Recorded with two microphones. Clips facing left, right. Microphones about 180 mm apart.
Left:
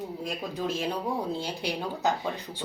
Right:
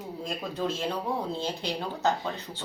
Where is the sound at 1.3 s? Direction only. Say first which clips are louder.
Even; 15° left (ahead or behind).